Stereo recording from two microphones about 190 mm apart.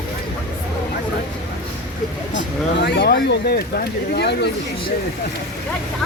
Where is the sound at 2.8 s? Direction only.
60° left (ahead or behind).